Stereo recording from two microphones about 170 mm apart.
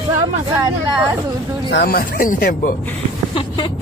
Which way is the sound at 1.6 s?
65° left (ahead or behind).